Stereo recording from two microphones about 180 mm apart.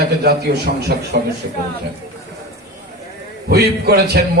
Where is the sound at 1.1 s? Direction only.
60° right (ahead or behind).